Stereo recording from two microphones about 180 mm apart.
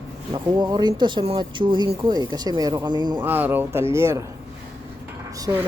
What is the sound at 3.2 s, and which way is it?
Speech, 10° right (ahead or behind).